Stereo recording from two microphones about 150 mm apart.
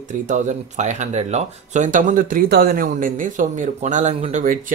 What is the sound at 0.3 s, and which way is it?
Speech, 50° right (ahead or behind).